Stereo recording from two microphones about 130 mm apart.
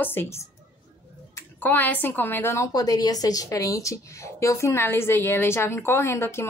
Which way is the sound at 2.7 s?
30° left (ahead or behind).